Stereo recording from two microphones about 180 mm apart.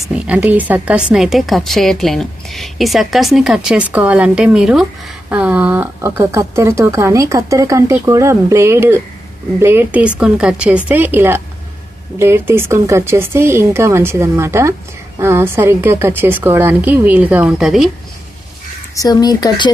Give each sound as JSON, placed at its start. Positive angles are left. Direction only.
{"t": 0.1, "sound": "a woman's voice", "side_deg": -5}
{"t": 18.9, "sound": "speech", "side_deg": 20}